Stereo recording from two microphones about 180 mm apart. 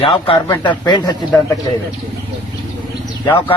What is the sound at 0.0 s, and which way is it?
Speech, 30° left (ahead or behind).